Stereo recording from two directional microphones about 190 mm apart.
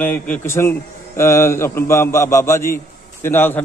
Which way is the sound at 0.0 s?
10° left (ahead or behind).